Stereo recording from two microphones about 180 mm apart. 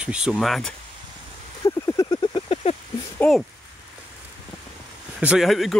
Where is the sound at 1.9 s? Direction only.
20° left (ahead or behind).